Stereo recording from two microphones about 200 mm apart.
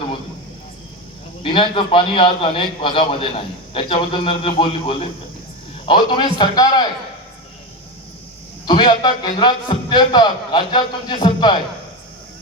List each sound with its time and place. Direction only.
1.4 s a man's voice: 25° left (ahead or behind)
8.6 s a man's voice: 25° left (ahead or behind)